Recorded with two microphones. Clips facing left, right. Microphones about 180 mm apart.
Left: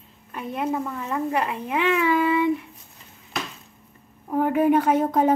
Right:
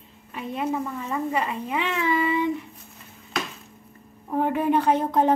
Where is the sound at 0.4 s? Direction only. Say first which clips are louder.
Left 1 dB; 60° left (ahead or behind).